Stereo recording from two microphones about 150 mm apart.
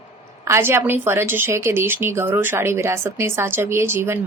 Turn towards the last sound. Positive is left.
turn(degrees=-15)  # may be behind; listen again after turning